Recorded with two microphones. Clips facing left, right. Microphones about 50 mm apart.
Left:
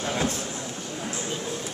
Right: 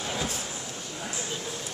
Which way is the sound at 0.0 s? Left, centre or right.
Left.